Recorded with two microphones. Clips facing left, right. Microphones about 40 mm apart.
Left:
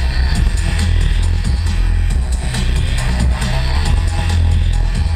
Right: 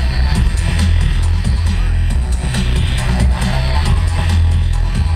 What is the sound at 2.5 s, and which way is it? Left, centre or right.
Music, right.